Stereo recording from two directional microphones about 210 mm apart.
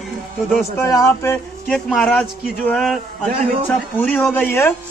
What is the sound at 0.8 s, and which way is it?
A man's voice, 15° left (ahead or behind).